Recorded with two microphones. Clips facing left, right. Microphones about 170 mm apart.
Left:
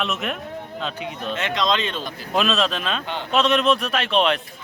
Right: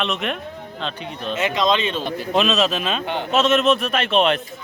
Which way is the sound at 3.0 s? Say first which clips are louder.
Right 4 dB; 55° right (ahead or behind).